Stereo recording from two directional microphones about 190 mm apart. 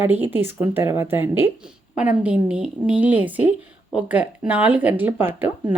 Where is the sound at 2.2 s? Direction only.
5° right (ahead or behind).